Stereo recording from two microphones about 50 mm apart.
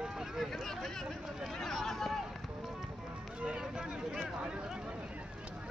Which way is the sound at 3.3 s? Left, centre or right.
Centre.